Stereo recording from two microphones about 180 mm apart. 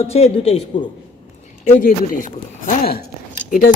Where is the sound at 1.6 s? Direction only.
50° left (ahead or behind).